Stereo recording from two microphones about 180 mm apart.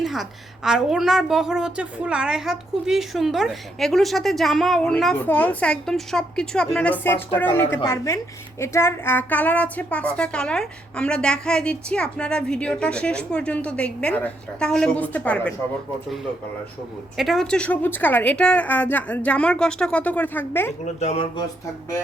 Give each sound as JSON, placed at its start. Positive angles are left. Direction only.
{"t": 0.0, "sound": "a woman's voice", "side_deg": 0}
{"t": 17.2, "sound": "a woman's voice", "side_deg": 0}
{"t": 20.8, "sound": "speech", "side_deg": 35}